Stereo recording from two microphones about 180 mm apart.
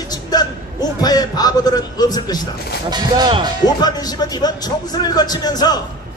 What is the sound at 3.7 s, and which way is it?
A man's voice, 20° left (ahead or behind).